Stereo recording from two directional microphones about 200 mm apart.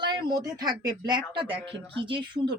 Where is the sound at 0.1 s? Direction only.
20° right (ahead or behind).